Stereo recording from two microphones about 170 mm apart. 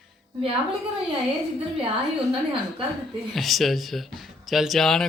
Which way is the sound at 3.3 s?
Centre (ahead or behind).